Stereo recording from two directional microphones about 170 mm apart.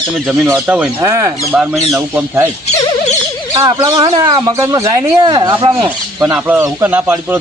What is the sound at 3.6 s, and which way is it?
Speech, 20° right (ahead or behind).